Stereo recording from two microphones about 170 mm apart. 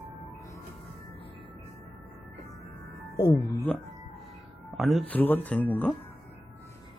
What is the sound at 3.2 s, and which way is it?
Speech, 20° left (ahead or behind).